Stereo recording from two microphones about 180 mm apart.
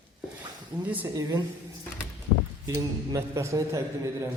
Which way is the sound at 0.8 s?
10° right (ahead or behind).